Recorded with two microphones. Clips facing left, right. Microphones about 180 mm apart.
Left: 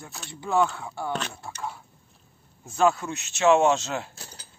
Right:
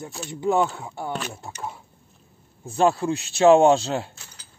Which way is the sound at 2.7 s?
30° right (ahead or behind).